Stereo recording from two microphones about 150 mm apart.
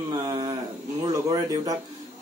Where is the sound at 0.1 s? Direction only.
25° right (ahead or behind).